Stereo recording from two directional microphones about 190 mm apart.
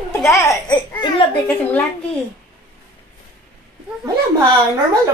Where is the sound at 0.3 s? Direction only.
15° left (ahead or behind).